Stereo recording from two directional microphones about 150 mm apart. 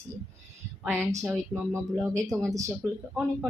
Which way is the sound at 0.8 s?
15° right (ahead or behind).